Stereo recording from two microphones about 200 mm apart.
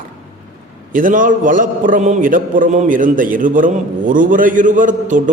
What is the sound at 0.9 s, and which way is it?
A man's voice, 40° right (ahead or behind).